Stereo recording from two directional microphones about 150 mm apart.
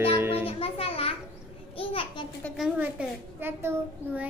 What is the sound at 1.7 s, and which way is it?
Speech, 40° left (ahead or behind).